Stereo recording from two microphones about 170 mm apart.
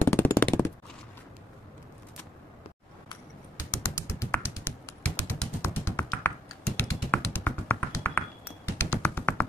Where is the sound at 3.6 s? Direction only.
15° left (ahead or behind).